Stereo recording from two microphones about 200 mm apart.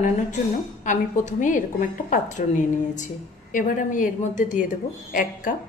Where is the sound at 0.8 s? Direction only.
40° left (ahead or behind).